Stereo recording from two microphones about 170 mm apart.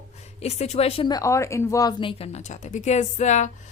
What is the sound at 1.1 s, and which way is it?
A woman's voice, 20° left (ahead or behind).